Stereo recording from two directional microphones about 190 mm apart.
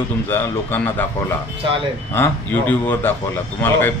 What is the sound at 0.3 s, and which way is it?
A man's voice, 10° left (ahead or behind).